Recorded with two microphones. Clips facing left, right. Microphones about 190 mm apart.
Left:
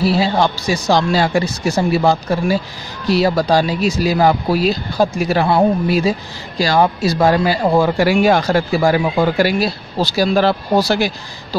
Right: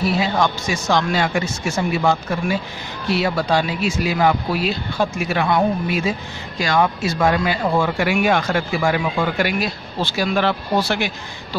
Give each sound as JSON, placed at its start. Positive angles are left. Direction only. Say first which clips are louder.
{"t": 0.0, "sound": "speech", "louder": "left 4 dB", "side_deg": 30}